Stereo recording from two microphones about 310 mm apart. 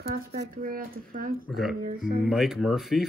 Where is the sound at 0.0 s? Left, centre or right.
Right.